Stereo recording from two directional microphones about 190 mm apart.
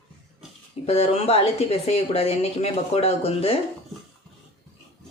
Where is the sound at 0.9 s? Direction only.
35° left (ahead or behind).